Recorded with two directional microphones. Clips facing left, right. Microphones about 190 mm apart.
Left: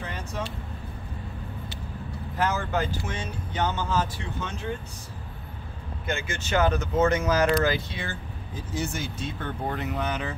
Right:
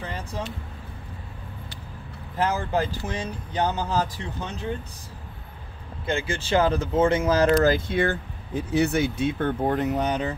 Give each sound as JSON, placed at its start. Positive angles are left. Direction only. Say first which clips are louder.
{"t": 2.3, "sound": "speech", "louder": "right 2 dB", "side_deg": -30}
{"t": 6.0, "sound": "speech", "louder": "right 5 dB", "side_deg": -30}
{"t": 7.5, "sound": "speech", "louder": "right 5 dB", "side_deg": -45}